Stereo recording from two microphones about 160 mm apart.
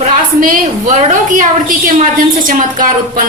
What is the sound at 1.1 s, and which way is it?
A woman's voice, 55° right (ahead or behind).